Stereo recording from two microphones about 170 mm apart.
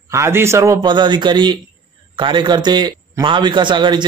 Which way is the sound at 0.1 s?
15° right (ahead or behind).